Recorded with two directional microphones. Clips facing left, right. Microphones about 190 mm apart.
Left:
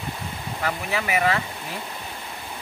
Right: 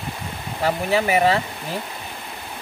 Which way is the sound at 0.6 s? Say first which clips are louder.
Right 7 dB; 30° right (ahead or behind).